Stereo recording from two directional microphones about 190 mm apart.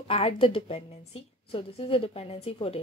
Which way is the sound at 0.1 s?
30° left (ahead or behind).